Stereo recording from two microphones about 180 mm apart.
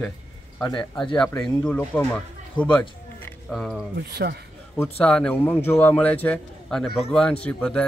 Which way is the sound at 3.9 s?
65° right (ahead or behind).